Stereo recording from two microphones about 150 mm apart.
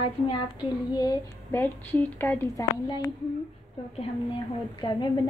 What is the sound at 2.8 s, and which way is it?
Child singing, 30° left (ahead or behind).